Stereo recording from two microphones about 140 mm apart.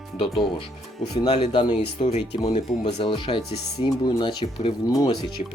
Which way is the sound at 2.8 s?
35° left (ahead or behind).